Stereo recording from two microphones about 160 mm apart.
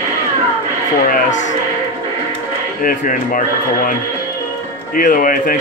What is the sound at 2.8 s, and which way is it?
Speech, 60° left (ahead or behind).